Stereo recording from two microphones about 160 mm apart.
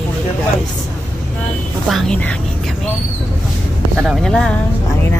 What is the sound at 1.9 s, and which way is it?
Speech, centre (ahead or behind).